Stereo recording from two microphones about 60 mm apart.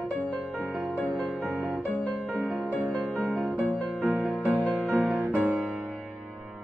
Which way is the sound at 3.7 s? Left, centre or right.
Right.